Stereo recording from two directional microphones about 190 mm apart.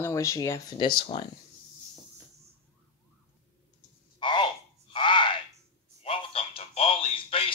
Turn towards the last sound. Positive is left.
turn(degrees=30)  # may be behind; listen again after turning